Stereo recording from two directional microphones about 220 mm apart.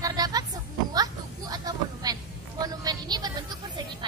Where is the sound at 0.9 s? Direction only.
15° right (ahead or behind).